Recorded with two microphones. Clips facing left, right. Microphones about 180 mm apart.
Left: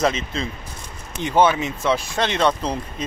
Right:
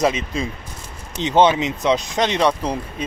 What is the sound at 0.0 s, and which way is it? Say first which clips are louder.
Speech: right 2 dB; 15° right (ahead or behind).